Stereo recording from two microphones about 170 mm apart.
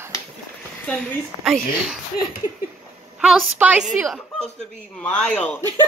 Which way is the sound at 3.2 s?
Centre (ahead or behind).